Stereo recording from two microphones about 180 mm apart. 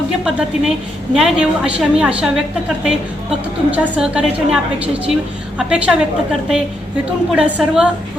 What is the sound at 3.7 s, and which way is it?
A woman's voice, 5° right (ahead or behind).